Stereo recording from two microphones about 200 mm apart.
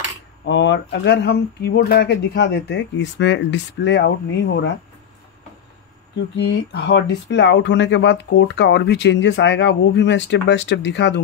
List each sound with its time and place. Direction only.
0.5 s speech: 65° left (ahead or behind)
6.1 s speech: 60° left (ahead or behind)